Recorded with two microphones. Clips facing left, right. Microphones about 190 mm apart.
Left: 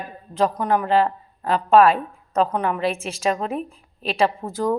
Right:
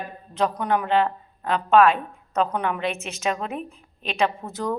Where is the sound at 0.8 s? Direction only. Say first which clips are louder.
Left 3 dB; 35° left (ahead or behind).